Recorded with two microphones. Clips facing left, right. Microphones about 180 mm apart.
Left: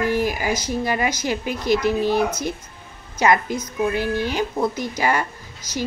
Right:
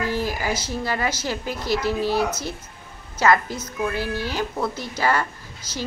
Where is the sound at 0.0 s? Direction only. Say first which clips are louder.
Left 4 dB; 15° left (ahead or behind).